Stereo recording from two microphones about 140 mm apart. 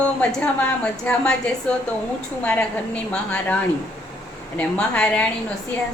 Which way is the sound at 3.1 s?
5° left (ahead or behind).